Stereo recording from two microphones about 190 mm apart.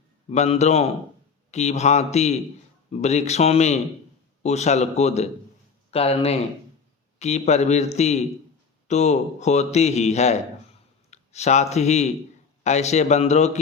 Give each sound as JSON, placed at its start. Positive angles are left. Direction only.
{"t": 0.3, "sound": "a man's voice", "side_deg": 35}